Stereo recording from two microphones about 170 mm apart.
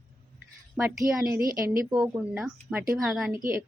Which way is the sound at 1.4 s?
55° right (ahead or behind).